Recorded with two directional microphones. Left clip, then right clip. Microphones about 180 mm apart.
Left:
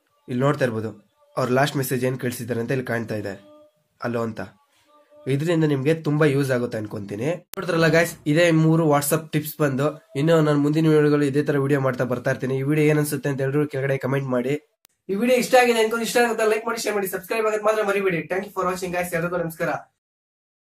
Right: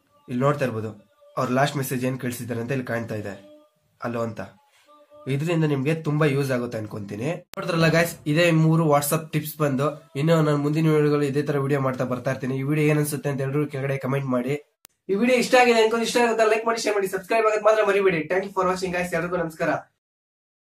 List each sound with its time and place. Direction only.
0.3 s speech: 35° left (ahead or behind)
15.0 s speech: centre (ahead or behind)